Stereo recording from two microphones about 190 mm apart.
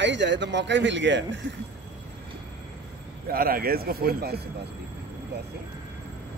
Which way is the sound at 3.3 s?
50° right (ahead or behind).